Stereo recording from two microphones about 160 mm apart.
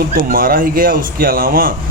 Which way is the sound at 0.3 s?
65° right (ahead or behind).